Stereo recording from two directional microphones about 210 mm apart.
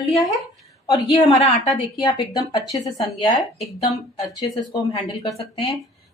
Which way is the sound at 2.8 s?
30° left (ahead or behind).